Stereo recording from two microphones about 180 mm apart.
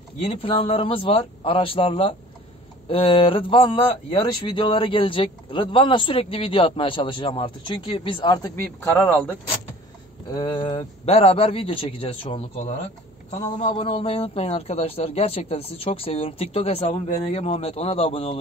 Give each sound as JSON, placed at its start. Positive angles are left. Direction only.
{"t": 0.2, "sound": "a man's voice", "side_deg": 30}
{"t": 8.9, "sound": "speech", "side_deg": 5}
{"t": 10.3, "sound": "a man's voice", "side_deg": 25}